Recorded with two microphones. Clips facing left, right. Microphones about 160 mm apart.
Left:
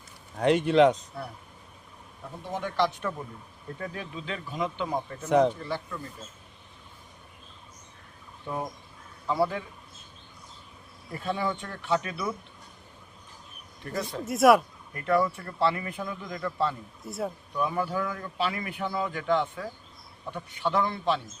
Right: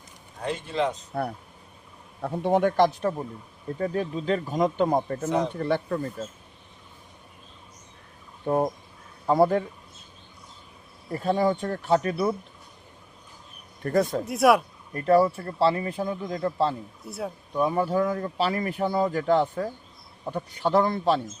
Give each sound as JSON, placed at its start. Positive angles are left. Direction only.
{"t": 0.3, "sound": "speech", "side_deg": 70}
{"t": 1.1, "sound": "a man's voice", "side_deg": -55}
{"t": 2.2, "sound": "a man's voice", "side_deg": -65}
{"t": 3.0, "sound": "a man's voice", "side_deg": -35}
{"t": 5.5, "sound": "a man's voice", "side_deg": -60}
{"t": 8.4, "sound": "speech", "side_deg": -50}
{"t": 11.1, "sound": "a man's voice", "side_deg": -40}
{"t": 13.8, "sound": "speech", "side_deg": -50}
{"t": 14.3, "sound": "speech", "side_deg": 0}
{"t": 14.9, "sound": "a man's voice", "side_deg": -35}
{"t": 17.0, "sound": "speech", "side_deg": 0}
{"t": 17.5, "sound": "a man's voice", "side_deg": -30}